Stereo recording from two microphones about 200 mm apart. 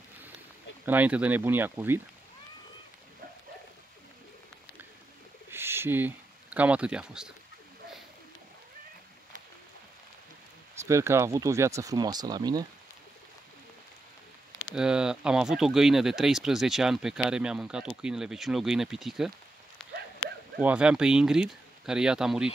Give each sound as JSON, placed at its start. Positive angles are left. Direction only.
{"t": 0.8, "sound": "speech", "side_deg": -10}
{"t": 5.5, "sound": "speech", "side_deg": -10}
{"t": 10.8, "sound": "speech", "side_deg": -15}
{"t": 14.8, "sound": "speech", "side_deg": -5}
{"t": 19.8, "sound": "dog", "side_deg": 0}
{"t": 20.6, "sound": "speech", "side_deg": -5}